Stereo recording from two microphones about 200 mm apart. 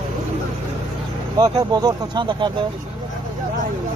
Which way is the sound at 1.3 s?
20° right (ahead or behind).